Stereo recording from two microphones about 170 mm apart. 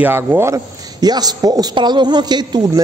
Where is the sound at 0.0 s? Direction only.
10° right (ahead or behind).